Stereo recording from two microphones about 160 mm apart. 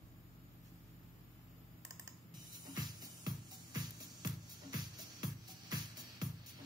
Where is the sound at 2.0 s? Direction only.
25° right (ahead or behind).